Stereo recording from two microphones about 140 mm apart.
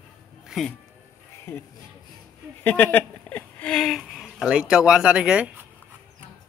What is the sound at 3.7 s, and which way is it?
Speech, centre (ahead or behind).